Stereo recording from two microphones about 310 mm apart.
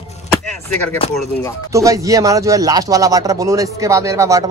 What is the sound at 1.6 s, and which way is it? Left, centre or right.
Speech, centre.